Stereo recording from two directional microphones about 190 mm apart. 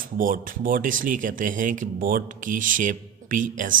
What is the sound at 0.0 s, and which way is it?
Speech, 45° right (ahead or behind).